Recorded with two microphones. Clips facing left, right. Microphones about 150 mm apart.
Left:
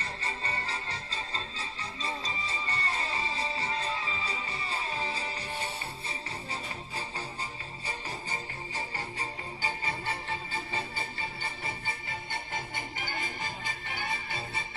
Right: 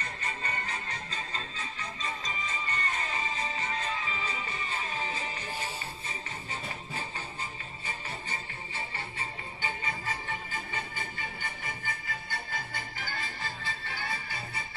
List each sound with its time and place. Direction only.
0.0 s music: 30° left (ahead or behind)
8.3 s music: 40° left (ahead or behind); by 14.6 s 25° left (ahead or behind)